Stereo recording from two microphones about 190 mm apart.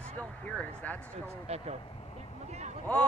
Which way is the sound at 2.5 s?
35° right (ahead or behind).